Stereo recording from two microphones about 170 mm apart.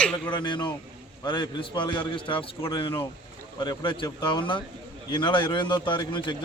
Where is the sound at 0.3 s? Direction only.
25° left (ahead or behind).